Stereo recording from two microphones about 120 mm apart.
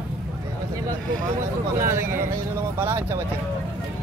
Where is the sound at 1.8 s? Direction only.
20° right (ahead or behind).